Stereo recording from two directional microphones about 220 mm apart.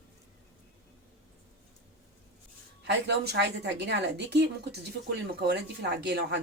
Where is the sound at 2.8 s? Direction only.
50° right (ahead or behind).